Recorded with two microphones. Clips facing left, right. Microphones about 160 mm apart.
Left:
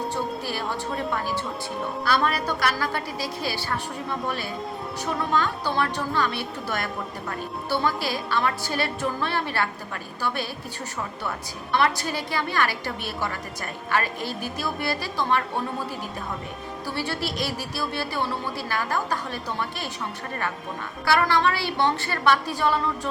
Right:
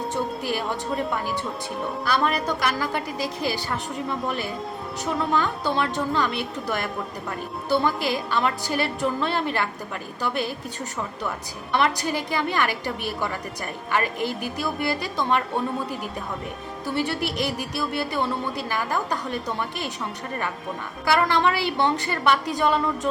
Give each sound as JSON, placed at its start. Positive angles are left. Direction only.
{"t": 2.0, "sound": "a woman's voice", "side_deg": -15}
{"t": 5.3, "sound": "a woman's voice", "side_deg": -10}
{"t": 6.7, "sound": "a woman's voice", "side_deg": 0}
{"t": 7.7, "sound": "a woman's voice", "side_deg": -15}
{"t": 11.8, "sound": "a woman's voice", "side_deg": -15}
{"t": 13.9, "sound": "a woman's voice", "side_deg": -20}
{"t": 16.8, "sound": "speech", "side_deg": -20}
{"t": 21.1, "sound": "a woman's voice", "side_deg": -15}